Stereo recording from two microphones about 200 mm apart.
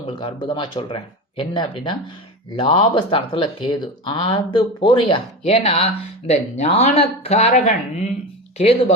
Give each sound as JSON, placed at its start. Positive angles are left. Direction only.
{"t": 0.1, "sound": "speech", "side_deg": 25}